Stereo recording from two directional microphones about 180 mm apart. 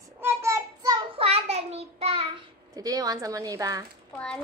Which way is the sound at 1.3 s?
35° right (ahead or behind).